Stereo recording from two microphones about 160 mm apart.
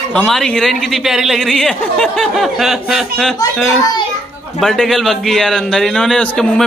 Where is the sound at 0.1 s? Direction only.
5° left (ahead or behind).